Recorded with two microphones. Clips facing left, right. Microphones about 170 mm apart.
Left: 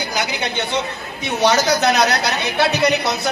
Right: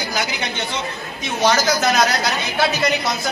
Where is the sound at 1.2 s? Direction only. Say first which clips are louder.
Left 1 dB; 65° left (ahead or behind).